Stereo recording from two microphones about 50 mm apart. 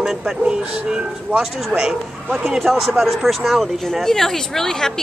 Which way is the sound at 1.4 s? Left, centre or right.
Centre.